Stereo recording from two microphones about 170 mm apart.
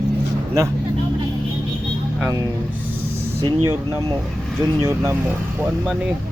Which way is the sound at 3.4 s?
15° right (ahead or behind).